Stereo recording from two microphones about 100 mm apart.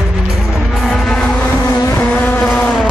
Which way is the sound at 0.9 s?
5° left (ahead or behind).